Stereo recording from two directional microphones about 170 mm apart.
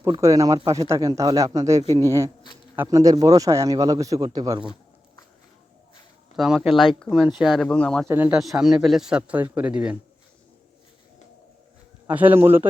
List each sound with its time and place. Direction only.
0.2 s a man's voice: 20° right (ahead or behind)
6.3 s speech: centre (ahead or behind)
8.0 s speech: 10° right (ahead or behind)
12.0 s a man's voice: 10° right (ahead or behind)